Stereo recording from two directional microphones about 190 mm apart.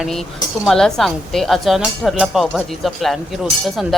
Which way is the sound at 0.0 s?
Centre (ahead or behind).